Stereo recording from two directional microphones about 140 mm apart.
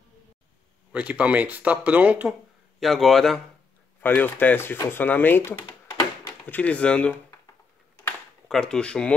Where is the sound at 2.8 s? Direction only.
Centre (ahead or behind).